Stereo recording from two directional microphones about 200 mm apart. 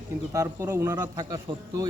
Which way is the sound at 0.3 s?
15° right (ahead or behind).